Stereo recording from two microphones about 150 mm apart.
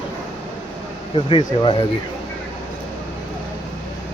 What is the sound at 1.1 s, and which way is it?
Speech, 35° left (ahead or behind).